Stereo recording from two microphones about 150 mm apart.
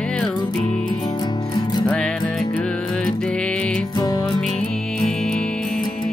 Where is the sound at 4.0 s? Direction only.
25° left (ahead or behind).